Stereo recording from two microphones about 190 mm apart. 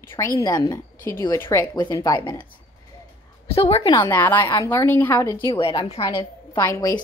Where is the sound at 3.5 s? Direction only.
30° left (ahead or behind).